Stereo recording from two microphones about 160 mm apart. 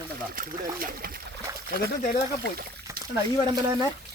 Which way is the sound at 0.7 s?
65° right (ahead or behind).